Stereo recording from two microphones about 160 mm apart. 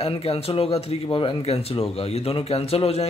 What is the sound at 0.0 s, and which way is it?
Speech, 40° left (ahead or behind).